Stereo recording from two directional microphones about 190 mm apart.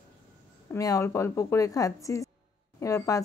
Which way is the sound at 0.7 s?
15° left (ahead or behind).